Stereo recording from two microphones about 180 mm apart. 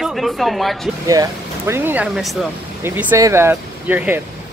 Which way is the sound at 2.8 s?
10° right (ahead or behind).